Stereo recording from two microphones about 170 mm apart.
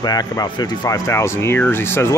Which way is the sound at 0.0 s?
20° left (ahead or behind).